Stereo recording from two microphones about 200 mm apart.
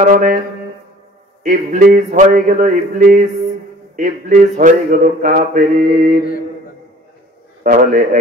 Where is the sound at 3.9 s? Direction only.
40° right (ahead or behind).